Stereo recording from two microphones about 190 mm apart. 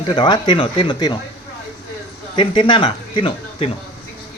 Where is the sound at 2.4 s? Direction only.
25° left (ahead or behind).